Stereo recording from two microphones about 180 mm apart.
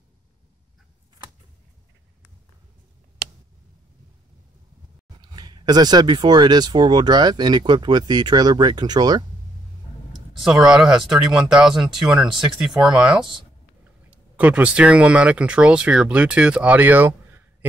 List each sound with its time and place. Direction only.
5.3 s speech: 25° right (ahead or behind)
10.4 s speech: 5° right (ahead or behind)